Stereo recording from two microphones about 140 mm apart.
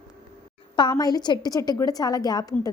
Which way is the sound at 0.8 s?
30° left (ahead or behind).